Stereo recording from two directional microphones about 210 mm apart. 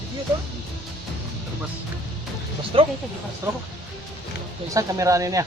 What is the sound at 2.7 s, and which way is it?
Speech, 25° right (ahead or behind).